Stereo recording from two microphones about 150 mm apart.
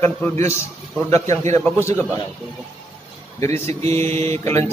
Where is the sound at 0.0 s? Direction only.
15° left (ahead or behind).